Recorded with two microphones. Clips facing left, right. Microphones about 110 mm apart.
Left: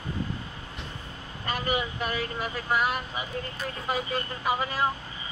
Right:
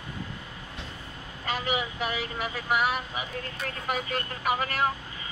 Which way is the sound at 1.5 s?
10° right (ahead or behind).